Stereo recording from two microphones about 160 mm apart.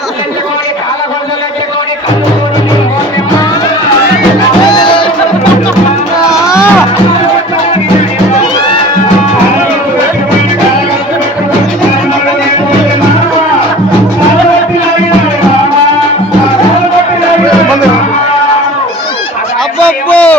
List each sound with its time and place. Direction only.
4.7 s music: 30° left (ahead or behind)
6.3 s music: 5° right (ahead or behind)
20.1 s a sound: 10° left (ahead or behind)